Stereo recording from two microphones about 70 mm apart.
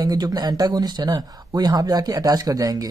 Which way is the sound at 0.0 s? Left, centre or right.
Right.